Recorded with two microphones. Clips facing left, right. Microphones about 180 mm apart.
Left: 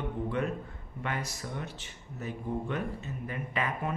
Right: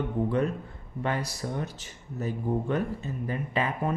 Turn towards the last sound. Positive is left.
turn(degrees=-30)  # may be behind; listen again after turning